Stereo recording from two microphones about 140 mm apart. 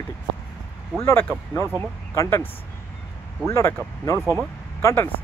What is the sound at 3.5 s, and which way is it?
Speech, 20° left (ahead or behind).